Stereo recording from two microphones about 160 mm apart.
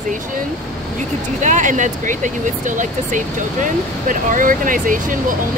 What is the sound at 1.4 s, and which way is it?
Speech, 50° right (ahead or behind).